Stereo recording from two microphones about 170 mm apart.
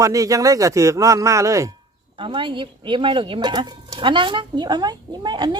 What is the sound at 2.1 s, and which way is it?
Speech, 30° right (ahead or behind).